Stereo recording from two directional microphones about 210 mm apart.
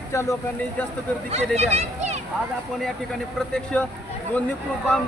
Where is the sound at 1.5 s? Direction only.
30° right (ahead or behind).